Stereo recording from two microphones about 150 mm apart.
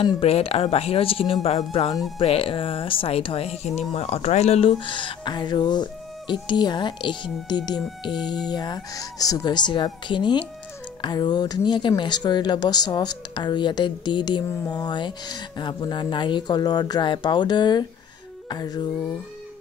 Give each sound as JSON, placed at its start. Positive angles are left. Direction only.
{"t": 0.0, "sound": "speech", "side_deg": 40}